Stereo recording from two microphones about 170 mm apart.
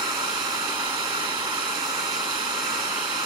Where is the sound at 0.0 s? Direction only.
25° right (ahead or behind).